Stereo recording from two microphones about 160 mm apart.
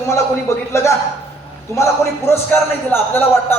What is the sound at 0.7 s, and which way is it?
A man's voice, 15° left (ahead or behind).